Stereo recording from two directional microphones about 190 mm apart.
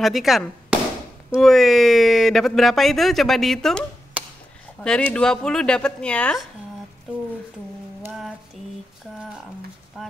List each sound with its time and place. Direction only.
0.0 s speech: centre (ahead or behind)
4.2 s chop: 5° right (ahead or behind)
4.8 s speech: 5° left (ahead or behind)
8.0 s a sound: 5° right (ahead or behind)